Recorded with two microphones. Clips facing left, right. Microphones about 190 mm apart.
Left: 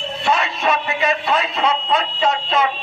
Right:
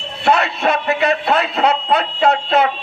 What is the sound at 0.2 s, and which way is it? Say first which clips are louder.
A man's voice: right 4 dB; 65° right (ahead or behind).